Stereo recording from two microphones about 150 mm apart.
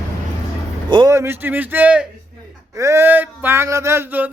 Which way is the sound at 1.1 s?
15° right (ahead or behind).